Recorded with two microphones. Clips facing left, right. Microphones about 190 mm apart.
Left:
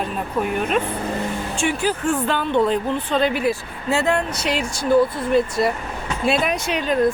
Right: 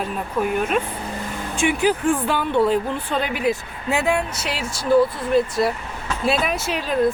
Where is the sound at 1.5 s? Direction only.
15° right (ahead or behind).